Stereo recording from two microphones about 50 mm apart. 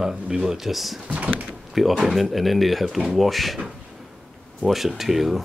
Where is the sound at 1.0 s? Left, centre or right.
Right.